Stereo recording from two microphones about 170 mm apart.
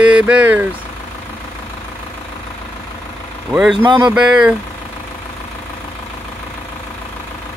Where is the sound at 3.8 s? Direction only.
25° right (ahead or behind).